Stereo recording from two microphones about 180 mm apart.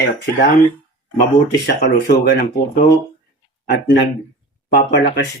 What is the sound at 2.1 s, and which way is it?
Speech, 50° left (ahead or behind).